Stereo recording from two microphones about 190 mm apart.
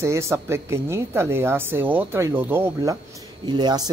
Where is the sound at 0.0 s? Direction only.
15° right (ahead or behind).